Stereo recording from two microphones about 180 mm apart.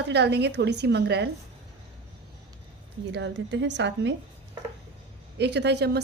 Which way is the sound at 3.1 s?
80° right.